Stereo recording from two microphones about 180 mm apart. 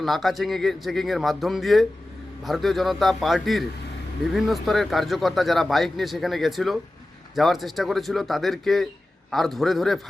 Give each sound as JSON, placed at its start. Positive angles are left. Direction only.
{"t": 0.0, "sound": "speech", "side_deg": 0}